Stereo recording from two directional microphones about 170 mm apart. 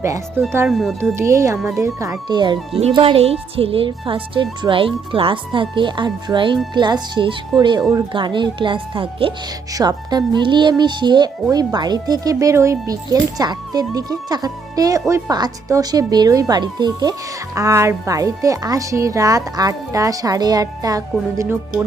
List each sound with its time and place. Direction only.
0.0 s speech: 15° right (ahead or behind)
0.7 s speech: centre (ahead or behind)
1.1 s speech: 15° right (ahead or behind)